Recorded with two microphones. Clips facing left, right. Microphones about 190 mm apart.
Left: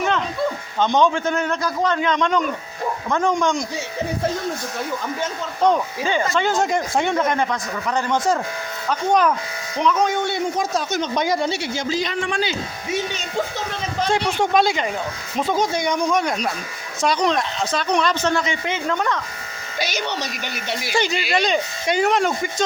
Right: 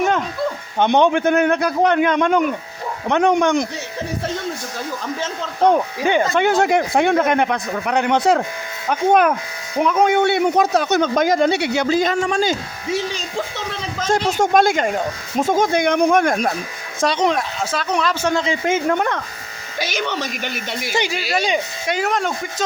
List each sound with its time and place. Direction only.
0.8 s a man's voice: 60° right (ahead or behind)
3.1 s a man's voice: 65° right (ahead or behind)
6.1 s a man's voice: 60° right (ahead or behind)
12.9 s speech: 30° right (ahead or behind)
14.0 s speech: 45° right (ahead or behind)
17.2 s speech: 5° right (ahead or behind)
18.6 s speech: 50° right (ahead or behind)
21.3 s speech: 10° right (ahead or behind)